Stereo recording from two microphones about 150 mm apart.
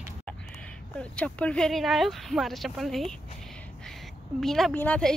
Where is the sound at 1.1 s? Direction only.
10° left (ahead or behind).